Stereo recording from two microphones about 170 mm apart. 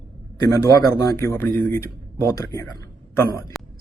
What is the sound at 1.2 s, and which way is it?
Speech, 15° left (ahead or behind).